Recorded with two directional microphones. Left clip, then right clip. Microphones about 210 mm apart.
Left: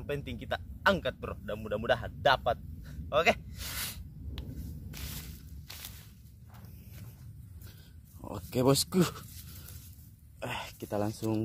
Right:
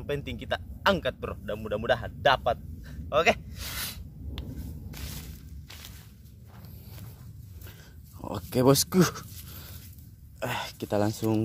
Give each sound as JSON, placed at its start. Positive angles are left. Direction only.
{"t": 0.0, "sound": "speech", "side_deg": 0}
{"t": 4.9, "sound": "squish", "side_deg": 20}
{"t": 8.2, "sound": "speech", "side_deg": -20}
{"t": 10.4, "sound": "speech", "side_deg": -20}